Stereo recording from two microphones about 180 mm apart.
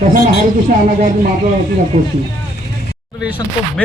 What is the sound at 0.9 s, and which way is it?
Speech, 45° right (ahead or behind).